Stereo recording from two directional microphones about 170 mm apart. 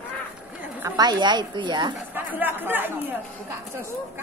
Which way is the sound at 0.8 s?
25° right (ahead or behind).